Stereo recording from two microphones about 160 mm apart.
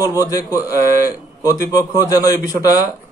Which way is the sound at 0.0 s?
20° left (ahead or behind).